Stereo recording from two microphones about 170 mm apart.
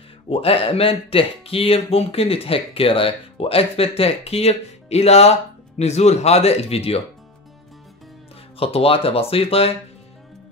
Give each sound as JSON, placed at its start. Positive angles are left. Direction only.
{"t": 0.3, "sound": "speech", "side_deg": 35}
{"t": 8.5, "sound": "speech", "side_deg": 35}